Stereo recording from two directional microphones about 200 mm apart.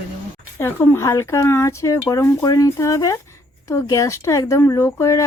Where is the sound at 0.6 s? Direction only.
10° left (ahead or behind).